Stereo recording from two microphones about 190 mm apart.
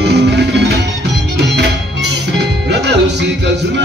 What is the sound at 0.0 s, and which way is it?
Music, 60° right (ahead or behind).